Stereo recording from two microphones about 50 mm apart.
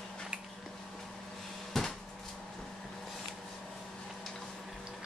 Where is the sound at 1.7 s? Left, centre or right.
Centre.